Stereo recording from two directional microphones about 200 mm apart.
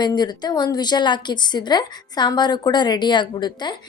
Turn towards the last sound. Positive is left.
turn(degrees=20)  # may be behind; listen again after turning